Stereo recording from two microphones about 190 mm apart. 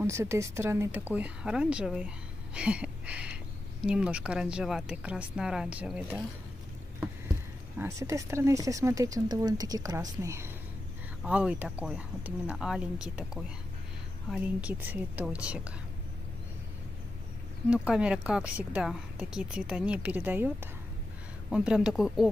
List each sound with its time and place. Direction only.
0.0 s a woman's voice: 15° right (ahead or behind)
7.8 s a woman's voice: 15° right (ahead or behind)
17.6 s a woman's voice: 5° right (ahead or behind)